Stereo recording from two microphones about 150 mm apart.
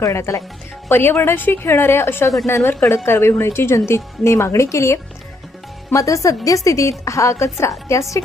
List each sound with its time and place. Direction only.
0.0 s a woman's voice: 20° left (ahead or behind)